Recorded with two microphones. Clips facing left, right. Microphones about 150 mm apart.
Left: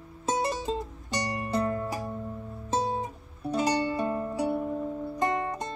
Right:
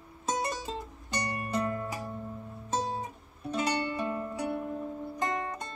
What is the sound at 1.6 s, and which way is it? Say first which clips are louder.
Music: left 3 dB; 30° left (ahead or behind).